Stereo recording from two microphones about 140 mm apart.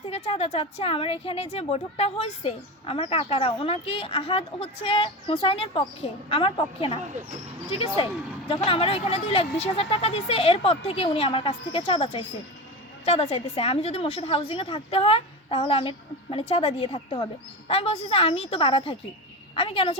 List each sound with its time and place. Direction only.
0.1 s a woman's voice: 45° left (ahead or behind)
8.4 s a woman's voice: 40° left (ahead or behind)